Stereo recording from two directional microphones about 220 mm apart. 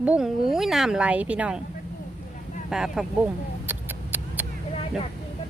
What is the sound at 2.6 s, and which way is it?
Speech, centre (ahead or behind).